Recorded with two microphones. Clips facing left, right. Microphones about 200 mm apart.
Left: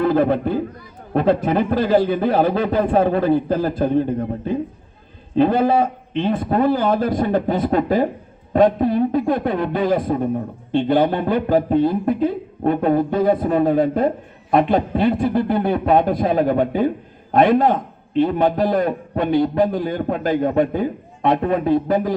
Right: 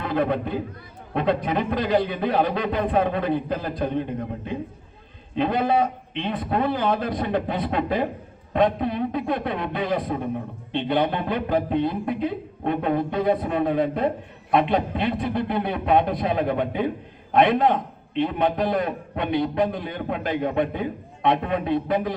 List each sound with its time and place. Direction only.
0.0 s a man's voice: 40° left (ahead or behind)